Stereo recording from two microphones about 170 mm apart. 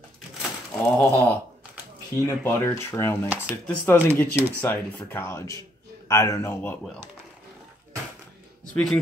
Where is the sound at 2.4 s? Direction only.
15° left (ahead or behind).